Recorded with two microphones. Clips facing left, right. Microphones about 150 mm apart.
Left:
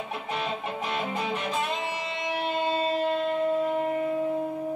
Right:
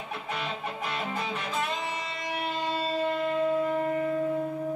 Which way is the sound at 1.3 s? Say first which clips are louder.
Left 2 dB; 25° left (ahead or behind).